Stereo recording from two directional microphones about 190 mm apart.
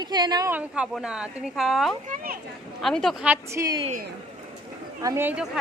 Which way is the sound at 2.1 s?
50° right (ahead or behind).